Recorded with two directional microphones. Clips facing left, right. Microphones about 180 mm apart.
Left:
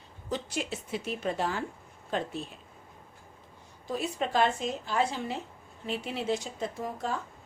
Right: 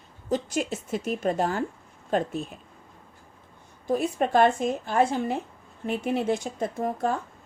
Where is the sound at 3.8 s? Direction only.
55° right (ahead or behind).